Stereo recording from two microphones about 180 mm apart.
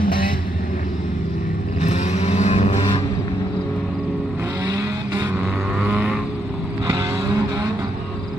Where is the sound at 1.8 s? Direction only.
40° left (ahead or behind).